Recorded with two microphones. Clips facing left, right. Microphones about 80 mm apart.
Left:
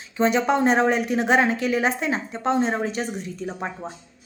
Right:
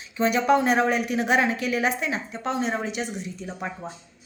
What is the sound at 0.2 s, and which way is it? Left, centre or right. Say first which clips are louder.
A woman's voice: left 1 dB; left.